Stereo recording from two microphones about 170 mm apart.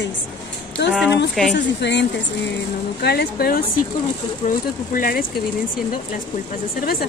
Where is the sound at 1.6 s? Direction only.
90° left.